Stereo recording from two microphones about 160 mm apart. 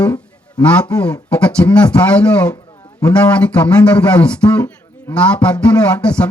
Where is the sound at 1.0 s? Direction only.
5° left (ahead or behind).